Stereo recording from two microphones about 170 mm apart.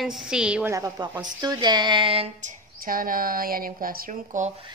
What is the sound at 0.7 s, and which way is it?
Speech, 20° right (ahead or behind).